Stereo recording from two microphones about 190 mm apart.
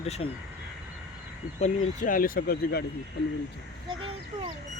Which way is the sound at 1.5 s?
40° left (ahead or behind).